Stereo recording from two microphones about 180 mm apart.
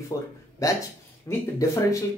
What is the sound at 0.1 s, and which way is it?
Speech, 20° left (ahead or behind).